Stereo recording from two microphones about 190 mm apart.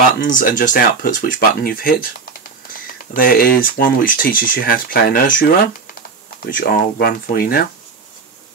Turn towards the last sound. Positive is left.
turn(degrees=50)  # may be behind; listen again after turning